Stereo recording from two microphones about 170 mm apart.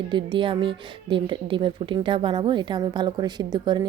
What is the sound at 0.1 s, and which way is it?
Speech, 30° right (ahead or behind).